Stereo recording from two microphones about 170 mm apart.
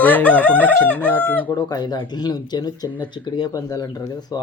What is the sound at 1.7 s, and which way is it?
Speech, 25° left (ahead or behind).